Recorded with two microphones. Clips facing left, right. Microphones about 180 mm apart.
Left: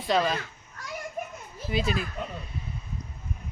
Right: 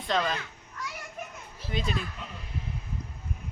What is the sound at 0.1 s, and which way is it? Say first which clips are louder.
Speech: left 3 dB; 10° left (ahead or behind).